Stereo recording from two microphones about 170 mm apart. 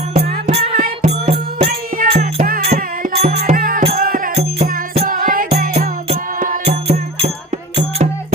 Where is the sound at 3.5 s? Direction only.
55° right (ahead or behind).